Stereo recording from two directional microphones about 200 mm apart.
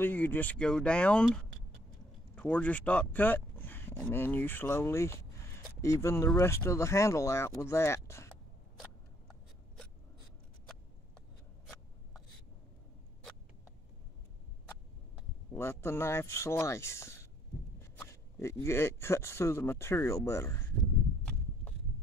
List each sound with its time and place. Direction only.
0.0 s speech: 10° left (ahead or behind)
11.6 s writing: centre (ahead or behind)
15.5 s speech: 10° left (ahead or behind)